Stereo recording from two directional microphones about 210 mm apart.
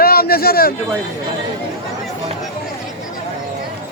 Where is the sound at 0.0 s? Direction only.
45° left (ahead or behind).